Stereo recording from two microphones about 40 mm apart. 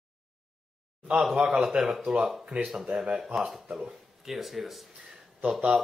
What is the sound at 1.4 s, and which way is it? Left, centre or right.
Speech, centre.